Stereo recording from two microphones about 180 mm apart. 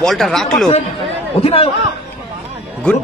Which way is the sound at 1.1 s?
35° left (ahead or behind).